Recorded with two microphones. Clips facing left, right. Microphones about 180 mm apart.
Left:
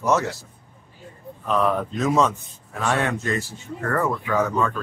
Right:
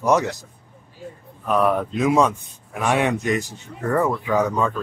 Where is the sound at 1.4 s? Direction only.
10° right (ahead or behind).